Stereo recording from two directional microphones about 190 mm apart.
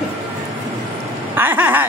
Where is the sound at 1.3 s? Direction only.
10° right (ahead or behind).